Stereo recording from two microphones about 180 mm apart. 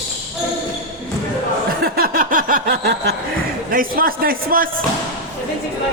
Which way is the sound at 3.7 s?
50° right (ahead or behind).